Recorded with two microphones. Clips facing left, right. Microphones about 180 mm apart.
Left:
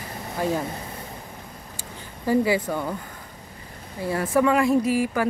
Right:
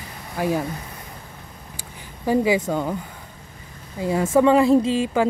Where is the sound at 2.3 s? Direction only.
20° right (ahead or behind).